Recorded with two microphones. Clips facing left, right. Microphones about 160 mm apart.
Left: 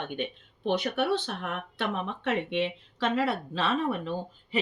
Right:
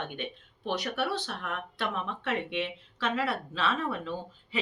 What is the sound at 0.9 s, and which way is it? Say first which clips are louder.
Speech: left 4 dB; 50° left (ahead or behind).